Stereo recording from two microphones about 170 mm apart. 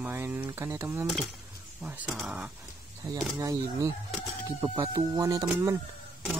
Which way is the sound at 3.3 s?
20° right (ahead or behind).